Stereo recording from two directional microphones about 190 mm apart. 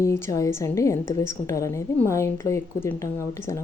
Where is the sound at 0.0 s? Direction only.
15° left (ahead or behind).